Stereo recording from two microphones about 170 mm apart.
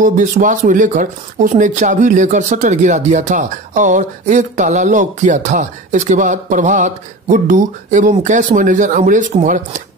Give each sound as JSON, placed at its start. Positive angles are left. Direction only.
{"t": 0.0, "sound": "speech", "side_deg": -50}